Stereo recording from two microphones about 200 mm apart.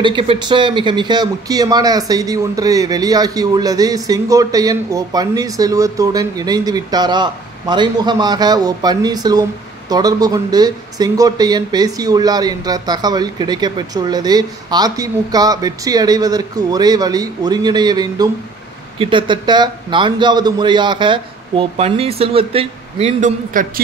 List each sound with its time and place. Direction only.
0.0 s speech: 25° right (ahead or behind)